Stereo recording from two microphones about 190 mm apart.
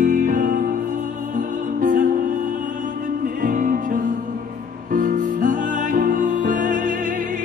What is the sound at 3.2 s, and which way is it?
Music, 45° right (ahead or behind).